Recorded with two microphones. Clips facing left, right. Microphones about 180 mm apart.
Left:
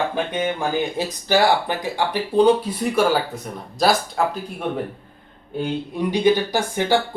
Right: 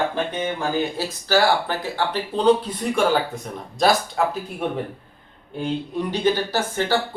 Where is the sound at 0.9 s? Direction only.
15° left (ahead or behind); by 4.2 s centre (ahead or behind).